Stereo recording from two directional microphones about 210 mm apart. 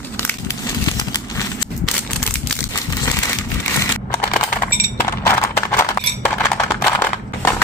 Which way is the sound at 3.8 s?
10° left (ahead or behind).